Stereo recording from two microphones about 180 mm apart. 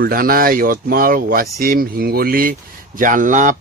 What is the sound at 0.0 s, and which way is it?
Speech, 55° right (ahead or behind).